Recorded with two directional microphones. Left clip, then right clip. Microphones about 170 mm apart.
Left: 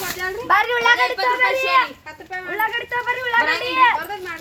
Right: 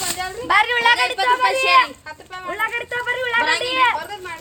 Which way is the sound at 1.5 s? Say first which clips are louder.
Right 2 dB; 30° right (ahead or behind).